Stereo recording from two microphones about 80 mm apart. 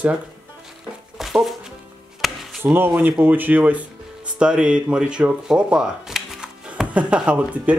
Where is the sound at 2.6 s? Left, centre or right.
Right.